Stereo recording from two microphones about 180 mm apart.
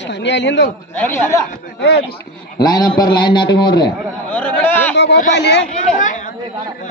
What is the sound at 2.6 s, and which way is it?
A man's voice, 25° left (ahead or behind).